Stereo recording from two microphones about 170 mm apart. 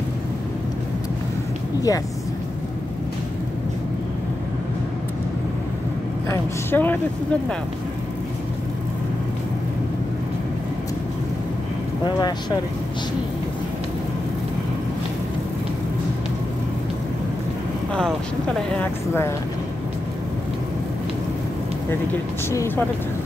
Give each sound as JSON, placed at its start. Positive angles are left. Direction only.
{"t": 1.9, "sound": "speech", "side_deg": 20}
{"t": 6.2, "sound": "a woman's voice", "side_deg": 15}
{"t": 12.0, "sound": "speech", "side_deg": 25}
{"t": 17.9, "sound": "speech", "side_deg": 5}
{"t": 22.5, "sound": "a woman's voice", "side_deg": 15}